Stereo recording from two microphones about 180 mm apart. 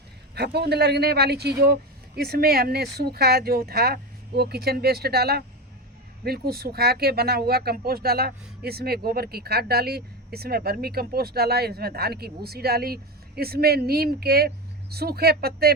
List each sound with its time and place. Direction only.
0.3 s speech: 65° right (ahead or behind)